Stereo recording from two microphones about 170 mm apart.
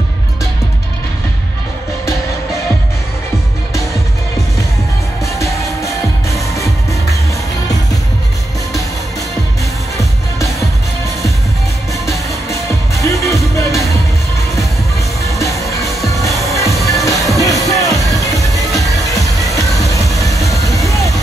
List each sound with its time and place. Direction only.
5.2 s music: 20° left (ahead or behind)
12.1 s music: 15° left (ahead or behind)
15.3 s music: 20° left (ahead or behind)
20.2 s vehicle: 20° left (ahead or behind)